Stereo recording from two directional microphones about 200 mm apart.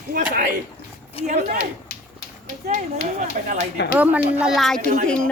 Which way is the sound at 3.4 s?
50° right (ahead or behind).